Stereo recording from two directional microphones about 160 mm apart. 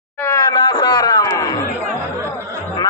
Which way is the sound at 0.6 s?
25° left (ahead or behind).